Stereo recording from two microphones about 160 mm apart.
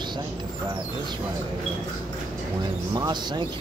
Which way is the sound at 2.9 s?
25° right (ahead or behind).